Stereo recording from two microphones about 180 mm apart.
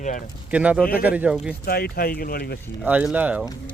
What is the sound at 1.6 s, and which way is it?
Speech, 55° left (ahead or behind).